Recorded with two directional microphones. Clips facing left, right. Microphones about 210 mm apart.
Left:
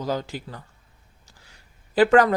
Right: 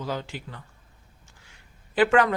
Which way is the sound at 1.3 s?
40° left (ahead or behind).